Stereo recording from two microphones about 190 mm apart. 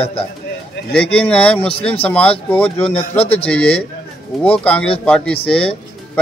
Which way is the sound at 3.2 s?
30° left (ahead or behind).